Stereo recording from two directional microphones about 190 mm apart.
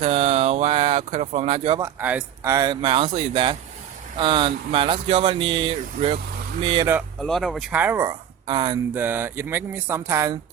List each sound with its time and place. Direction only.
0.0 s a sound: 30° right (ahead or behind)
1.8 s speech: 10° right (ahead or behind); by 6.8 s 30° right (ahead or behind)
7.2 s speech: centre (ahead or behind)
8.4 s speech: 25° right (ahead or behind)
8.9 s speech: 10° right (ahead or behind)